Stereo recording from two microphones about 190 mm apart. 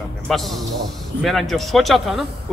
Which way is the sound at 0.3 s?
Centre (ahead or behind).